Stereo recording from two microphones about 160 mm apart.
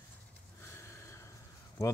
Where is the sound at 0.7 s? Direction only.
15° left (ahead or behind).